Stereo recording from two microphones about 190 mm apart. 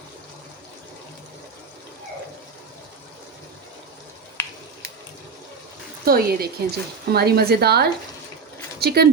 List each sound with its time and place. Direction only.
6.1 s speech: 55° right (ahead or behind)